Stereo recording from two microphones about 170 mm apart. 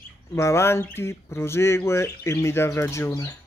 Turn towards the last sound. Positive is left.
turn(degrees=15)  # may be behind; listen again after turning